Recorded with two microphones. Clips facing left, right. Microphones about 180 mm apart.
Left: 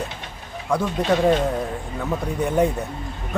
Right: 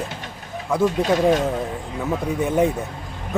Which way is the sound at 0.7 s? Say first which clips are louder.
Right 2 dB; 10° right (ahead or behind).